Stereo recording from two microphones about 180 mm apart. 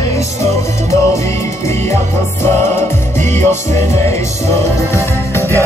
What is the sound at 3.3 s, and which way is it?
Music, 15° left (ahead or behind).